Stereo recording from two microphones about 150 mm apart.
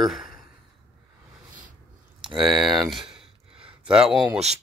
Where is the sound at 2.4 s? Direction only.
Centre (ahead or behind).